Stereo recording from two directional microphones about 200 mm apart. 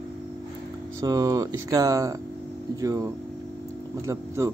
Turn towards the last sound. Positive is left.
turn(degrees=-15)  # may be behind; listen again after turning